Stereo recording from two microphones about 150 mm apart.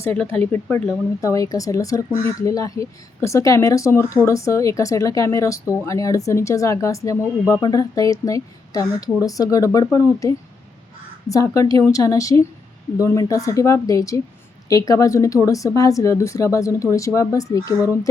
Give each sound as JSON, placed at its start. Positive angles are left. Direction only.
{"t": 0.3, "sound": "speech", "side_deg": 10}